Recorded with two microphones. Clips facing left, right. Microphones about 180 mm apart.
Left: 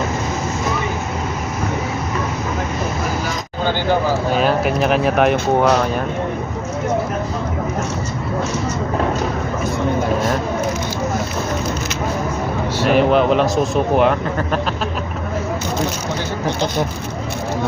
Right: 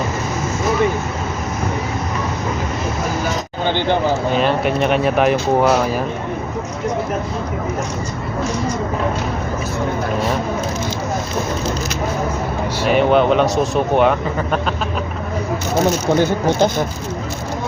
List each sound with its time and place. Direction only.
3.7 s a sound: 20° right (ahead or behind)
4.4 s speech: centre (ahead or behind)
12.8 s speech: centre (ahead or behind)